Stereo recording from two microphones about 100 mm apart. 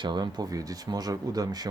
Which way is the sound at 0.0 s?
45° right (ahead or behind).